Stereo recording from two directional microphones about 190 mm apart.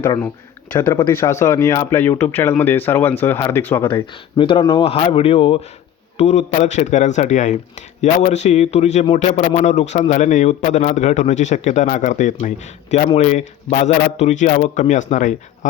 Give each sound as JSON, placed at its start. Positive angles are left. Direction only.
{"t": 0.0, "sound": "speech", "side_deg": 10}
{"t": 4.0, "sound": "speech", "side_deg": 25}